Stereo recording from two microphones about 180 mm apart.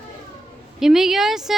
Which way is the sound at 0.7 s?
Centre (ahead or behind).